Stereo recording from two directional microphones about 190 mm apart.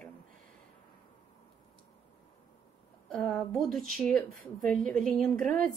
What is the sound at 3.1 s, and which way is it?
A woman's voice, 5° left (ahead or behind).